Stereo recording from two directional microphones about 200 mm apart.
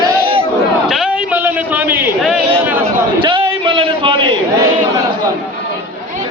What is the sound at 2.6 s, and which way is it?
Speech, 10° right (ahead or behind).